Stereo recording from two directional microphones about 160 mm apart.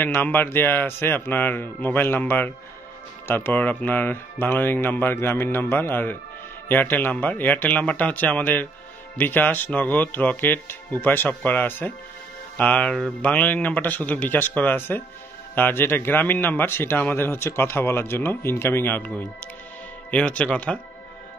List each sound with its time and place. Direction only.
0.0 s a man's voice: 10° left (ahead or behind)